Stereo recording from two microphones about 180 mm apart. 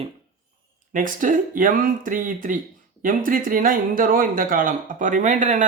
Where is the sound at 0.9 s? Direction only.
45° right (ahead or behind).